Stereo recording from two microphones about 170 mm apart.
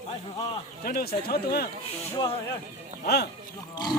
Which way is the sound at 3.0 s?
75° left (ahead or behind).